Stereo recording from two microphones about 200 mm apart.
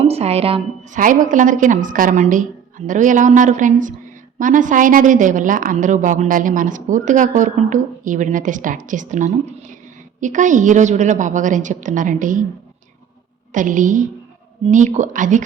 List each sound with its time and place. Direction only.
0.0 s a sound: 30° right (ahead or behind)
0.9 s speech: 40° right (ahead or behind)
13.5 s speech: 40° right (ahead or behind)